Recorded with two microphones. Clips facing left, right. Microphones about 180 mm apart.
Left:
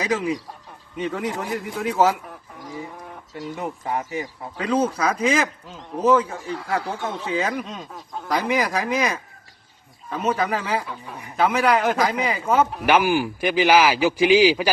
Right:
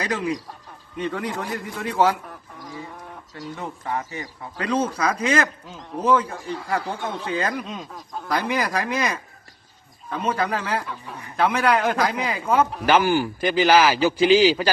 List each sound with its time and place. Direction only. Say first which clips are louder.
0.0 s speech: left 2 dB; 5° left (ahead or behind)
3.5 s a man's voice: left 2 dB; 15° left (ahead or behind)
4.5 s a man's voice: left 2 dB; centre (ahead or behind)